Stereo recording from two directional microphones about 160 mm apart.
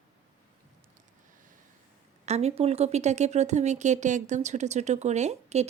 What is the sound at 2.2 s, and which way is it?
A woman's voice, 40° right (ahead or behind).